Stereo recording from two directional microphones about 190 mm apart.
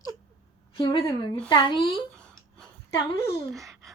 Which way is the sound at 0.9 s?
25° left (ahead or behind).